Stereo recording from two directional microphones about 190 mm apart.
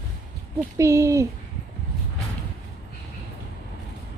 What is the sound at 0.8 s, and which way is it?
Speech, 15° right (ahead or behind).